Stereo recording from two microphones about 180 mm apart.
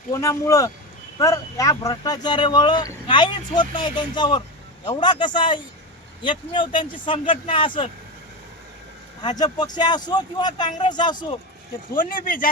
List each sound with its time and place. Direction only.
0.1 s speech: 20° left (ahead or behind)
9.2 s speech: 25° left (ahead or behind)
11.9 s speech: 50° left (ahead or behind)